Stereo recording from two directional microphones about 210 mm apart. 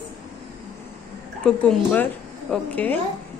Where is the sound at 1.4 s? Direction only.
5° left (ahead or behind).